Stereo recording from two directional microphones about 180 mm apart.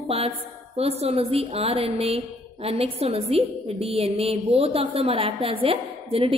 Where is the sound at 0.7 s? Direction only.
35° right (ahead or behind).